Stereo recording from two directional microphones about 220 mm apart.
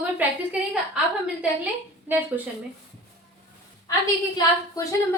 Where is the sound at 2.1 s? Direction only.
10° right (ahead or behind).